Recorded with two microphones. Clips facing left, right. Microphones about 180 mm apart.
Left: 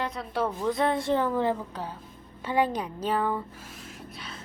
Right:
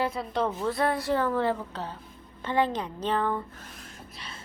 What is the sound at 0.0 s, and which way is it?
Speech, 5° right (ahead or behind).